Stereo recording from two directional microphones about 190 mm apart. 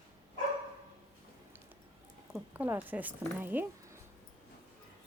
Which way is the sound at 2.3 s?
10° right (ahead or behind).